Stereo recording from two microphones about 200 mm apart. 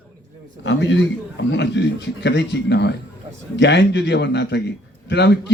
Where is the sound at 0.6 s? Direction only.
65° left (ahead or behind).